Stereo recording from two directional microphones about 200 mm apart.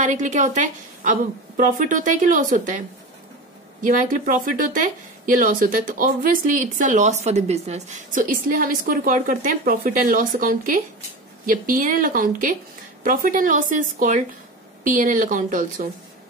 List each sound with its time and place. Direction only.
0.0 s a woman's voice: 40° right (ahead or behind)
3.8 s a woman's voice: 40° right (ahead or behind)